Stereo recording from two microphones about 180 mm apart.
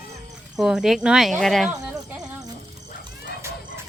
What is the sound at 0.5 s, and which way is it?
Speech, centre (ahead or behind).